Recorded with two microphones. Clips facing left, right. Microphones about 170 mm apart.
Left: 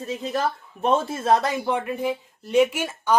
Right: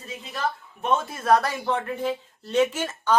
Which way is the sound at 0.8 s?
30° left (ahead or behind).